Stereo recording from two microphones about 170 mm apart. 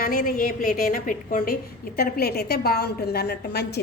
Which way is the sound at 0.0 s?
55° left (ahead or behind).